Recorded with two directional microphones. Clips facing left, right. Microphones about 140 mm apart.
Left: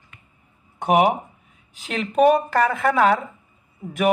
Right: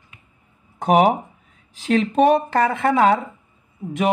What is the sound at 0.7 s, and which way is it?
Speech, 40° right (ahead or behind).